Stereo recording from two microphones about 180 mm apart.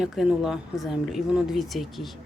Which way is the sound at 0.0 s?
5° right (ahead or behind).